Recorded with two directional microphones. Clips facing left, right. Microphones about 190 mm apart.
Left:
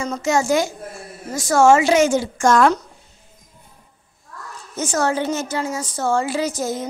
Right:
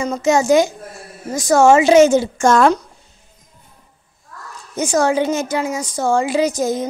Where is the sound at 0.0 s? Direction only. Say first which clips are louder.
Right 4 dB; 20° right (ahead or behind).